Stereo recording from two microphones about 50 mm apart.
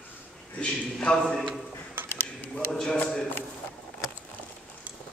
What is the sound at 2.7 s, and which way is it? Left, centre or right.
Speech, centre.